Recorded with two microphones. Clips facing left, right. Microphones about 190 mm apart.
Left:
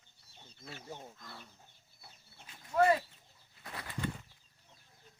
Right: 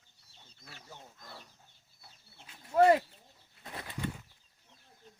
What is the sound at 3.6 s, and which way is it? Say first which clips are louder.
Bird flight: right 2 dB; 25° right (ahead or behind).